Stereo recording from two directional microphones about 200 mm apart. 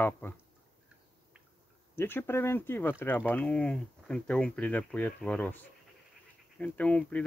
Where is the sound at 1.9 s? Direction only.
10° left (ahead or behind).